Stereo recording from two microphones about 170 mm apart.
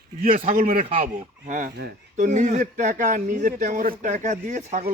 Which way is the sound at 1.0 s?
50° right (ahead or behind).